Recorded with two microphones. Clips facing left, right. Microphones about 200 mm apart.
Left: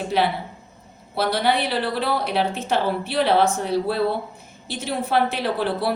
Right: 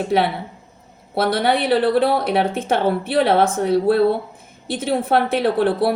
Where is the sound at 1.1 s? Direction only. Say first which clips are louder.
Right 3 dB; 55° right (ahead or behind).